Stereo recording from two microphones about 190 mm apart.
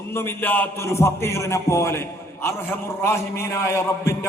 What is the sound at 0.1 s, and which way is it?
A man's voice, 10° left (ahead or behind).